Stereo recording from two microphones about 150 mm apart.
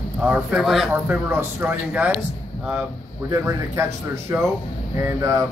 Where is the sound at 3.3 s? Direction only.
20° right (ahead or behind).